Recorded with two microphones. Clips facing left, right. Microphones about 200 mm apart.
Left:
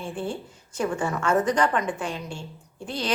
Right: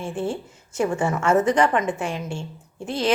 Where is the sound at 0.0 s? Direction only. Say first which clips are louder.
Right 4 dB; 25° right (ahead or behind).